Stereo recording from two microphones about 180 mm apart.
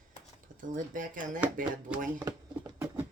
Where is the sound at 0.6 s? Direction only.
50° right (ahead or behind).